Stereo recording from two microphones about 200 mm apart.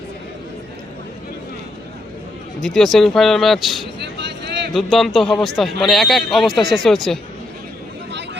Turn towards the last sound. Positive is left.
turn(degrees=0)  # may be behind; listen again after turning